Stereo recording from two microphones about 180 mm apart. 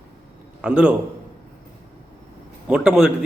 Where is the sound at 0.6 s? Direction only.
5° right (ahead or behind).